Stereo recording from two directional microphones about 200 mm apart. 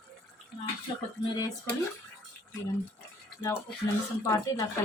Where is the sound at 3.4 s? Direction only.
15° left (ahead or behind).